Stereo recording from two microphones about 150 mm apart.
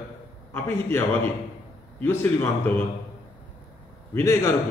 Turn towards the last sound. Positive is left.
turn(degrees=20)  # may be behind; listen again after turning